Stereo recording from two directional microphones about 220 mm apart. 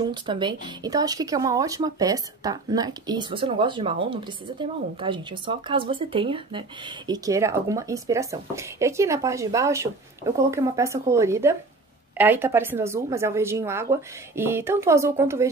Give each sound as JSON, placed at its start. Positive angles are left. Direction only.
{"t": 0.0, "sound": "speech", "side_deg": -20}